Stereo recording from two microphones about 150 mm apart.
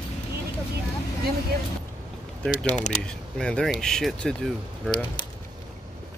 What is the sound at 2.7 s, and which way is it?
Speech, 55° left (ahead or behind).